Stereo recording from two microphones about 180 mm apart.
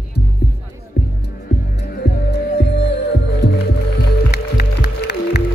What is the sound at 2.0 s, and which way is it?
Music, 70° left (ahead or behind).